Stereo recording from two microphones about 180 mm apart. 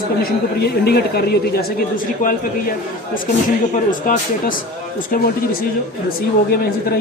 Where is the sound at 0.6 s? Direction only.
60° left (ahead or behind).